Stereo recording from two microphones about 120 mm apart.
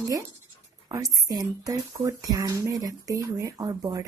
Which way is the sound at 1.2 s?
30° right (ahead or behind).